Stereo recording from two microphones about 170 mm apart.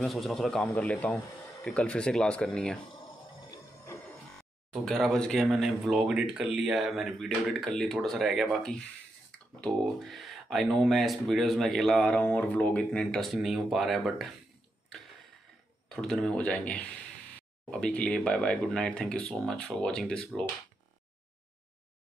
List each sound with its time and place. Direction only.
0.0 s speech: centre (ahead or behind)
3.4 s music: 15° left (ahead or behind)
4.8 s speech: centre (ahead or behind)
15.9 s speech: 5° left (ahead or behind)